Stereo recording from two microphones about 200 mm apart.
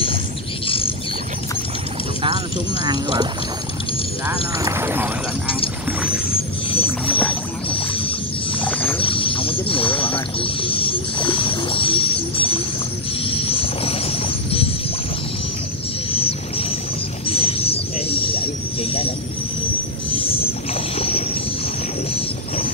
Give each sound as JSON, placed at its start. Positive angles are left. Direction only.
{"t": 0.7, "sound": "bird", "side_deg": 25}
{"t": 2.8, "sound": "speech", "side_deg": -20}
{"t": 4.6, "sound": "speech", "side_deg": -10}
{"t": 6.3, "sound": "music", "side_deg": 30}
{"t": 8.6, "sound": "a sound", "side_deg": 10}
{"t": 9.0, "sound": "a sound", "side_deg": 25}
{"t": 13.2, "sound": "music", "side_deg": 25}
{"t": 16.1, "sound": "music", "side_deg": 30}
{"t": 17.3, "sound": "a sound", "side_deg": 30}
{"t": 20.1, "sound": "wild animals", "side_deg": 30}